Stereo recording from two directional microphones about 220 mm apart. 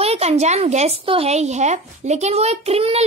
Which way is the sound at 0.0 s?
30° right (ahead or behind).